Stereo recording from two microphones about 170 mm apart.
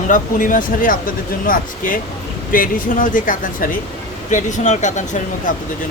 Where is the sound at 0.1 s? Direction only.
50° left (ahead or behind).